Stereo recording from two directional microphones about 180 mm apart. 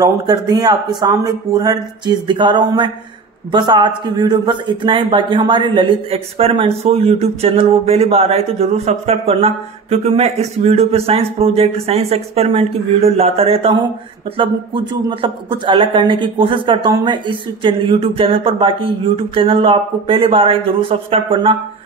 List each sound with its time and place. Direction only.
0.0 s speech: 20° right (ahead or behind)
15.0 s speech: 25° right (ahead or behind)